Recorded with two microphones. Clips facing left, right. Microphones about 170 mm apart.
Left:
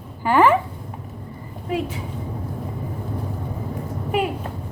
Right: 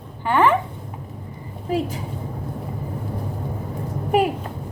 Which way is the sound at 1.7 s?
30° right (ahead or behind).